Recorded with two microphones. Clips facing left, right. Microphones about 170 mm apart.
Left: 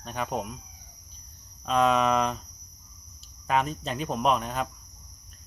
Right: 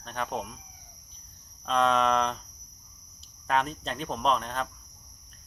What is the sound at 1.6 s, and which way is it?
Speech, 5° left (ahead or behind).